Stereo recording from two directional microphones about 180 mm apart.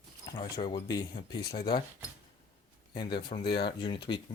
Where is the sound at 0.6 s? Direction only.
25° left (ahead or behind).